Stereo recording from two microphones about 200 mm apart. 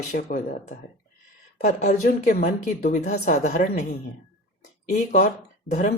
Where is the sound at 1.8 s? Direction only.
45° left (ahead or behind).